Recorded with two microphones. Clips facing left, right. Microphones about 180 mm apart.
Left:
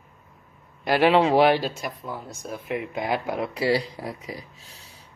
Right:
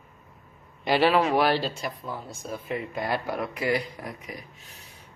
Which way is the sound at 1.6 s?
10° left (ahead or behind).